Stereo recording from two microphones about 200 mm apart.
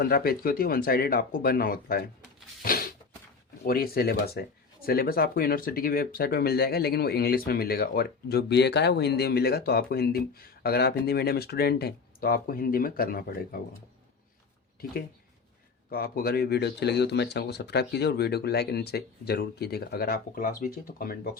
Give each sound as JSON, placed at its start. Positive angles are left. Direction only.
{"t": 0.0, "sound": "speech", "side_deg": 50}
{"t": 2.6, "sound": "a sound", "side_deg": 50}
{"t": 3.7, "sound": "speech", "side_deg": 50}
{"t": 15.9, "sound": "speech", "side_deg": 50}